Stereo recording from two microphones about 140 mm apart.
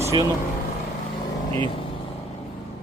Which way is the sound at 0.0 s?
20° right (ahead or behind).